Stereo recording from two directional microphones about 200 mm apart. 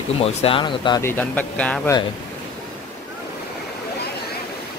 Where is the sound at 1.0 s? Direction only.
10° left (ahead or behind).